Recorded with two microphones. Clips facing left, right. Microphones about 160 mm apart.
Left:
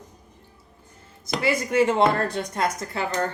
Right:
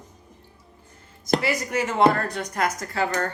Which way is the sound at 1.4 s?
25° left (ahead or behind).